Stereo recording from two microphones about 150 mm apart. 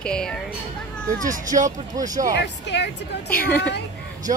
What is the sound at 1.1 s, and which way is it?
Speech, 20° right (ahead or behind).